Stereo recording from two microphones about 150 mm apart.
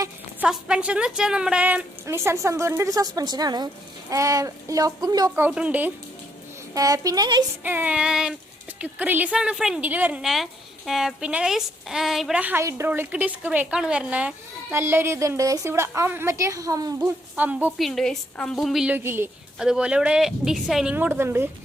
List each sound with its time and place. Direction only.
0.3 s a woman's voice: 5° right (ahead or behind); by 5.3 s 25° right (ahead or behind)
5.3 s a woman's voice: 10° right (ahead or behind)
6.7 s speech: 25° right (ahead or behind)
7.6 s a woman's voice: 10° right (ahead or behind)
17.3 s a woman's voice: 10° right (ahead or behind)
17.7 s a woman's voice: centre (ahead or behind); by 19.3 s 15° right (ahead or behind)
19.5 s a woman's voice: 5° right (ahead or behind)
20.9 s a woman's voice: 15° right (ahead or behind)